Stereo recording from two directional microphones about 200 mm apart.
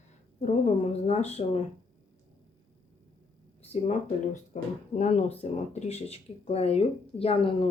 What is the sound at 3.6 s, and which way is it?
Speech, 30° left (ahead or behind).